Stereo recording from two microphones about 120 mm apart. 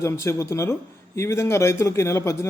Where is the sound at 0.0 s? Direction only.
25° left (ahead or behind).